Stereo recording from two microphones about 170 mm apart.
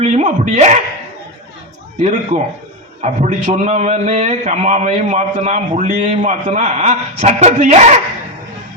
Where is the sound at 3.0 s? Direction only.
45° right (ahead or behind).